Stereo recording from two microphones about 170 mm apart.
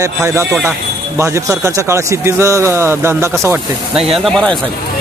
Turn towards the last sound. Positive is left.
turn(degrees=5)  # may be behind; listen again after turning